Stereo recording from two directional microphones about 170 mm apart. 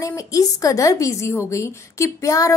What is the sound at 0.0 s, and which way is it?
A woman's voice, 20° left (ahead or behind).